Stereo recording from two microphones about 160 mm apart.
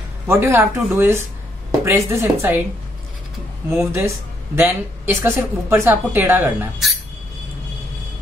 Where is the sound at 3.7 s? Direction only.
15° right (ahead or behind).